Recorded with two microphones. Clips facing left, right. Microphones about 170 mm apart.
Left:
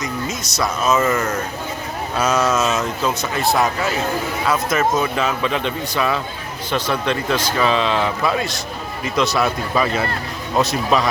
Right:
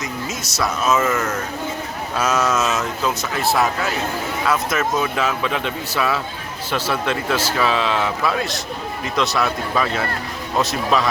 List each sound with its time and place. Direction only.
0.0 s a man's voice: 5° right (ahead or behind)